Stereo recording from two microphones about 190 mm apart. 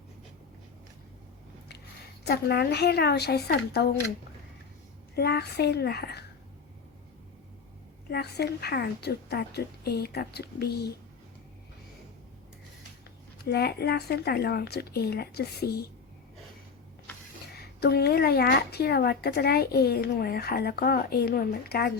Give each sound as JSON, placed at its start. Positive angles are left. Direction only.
{"t": 2.2, "sound": "speech", "side_deg": 55}
{"t": 5.1, "sound": "speech", "side_deg": 60}
{"t": 8.1, "sound": "speech", "side_deg": 60}
{"t": 13.4, "sound": "speech", "side_deg": 55}
{"t": 17.7, "sound": "speech", "side_deg": 55}